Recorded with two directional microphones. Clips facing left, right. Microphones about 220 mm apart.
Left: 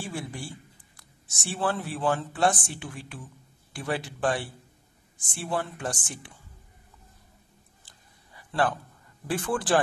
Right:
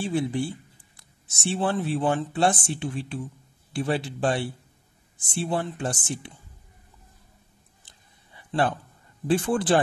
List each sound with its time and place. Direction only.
0.0 s speech: 20° right (ahead or behind)
7.8 s a sound: 20° right (ahead or behind)
9.3 s speech: 25° right (ahead or behind)